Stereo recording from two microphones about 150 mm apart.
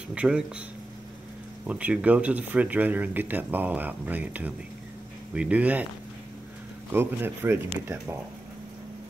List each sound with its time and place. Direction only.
0.1 s speech: 10° right (ahead or behind)
1.7 s speech: 10° right (ahead or behind)
6.9 s speech: 15° right (ahead or behind)